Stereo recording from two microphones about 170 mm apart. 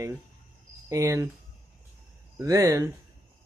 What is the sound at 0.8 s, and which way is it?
Speech, 20° right (ahead or behind).